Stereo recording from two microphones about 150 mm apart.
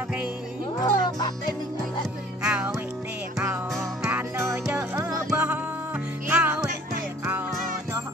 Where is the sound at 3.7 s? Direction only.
20° right (ahead or behind).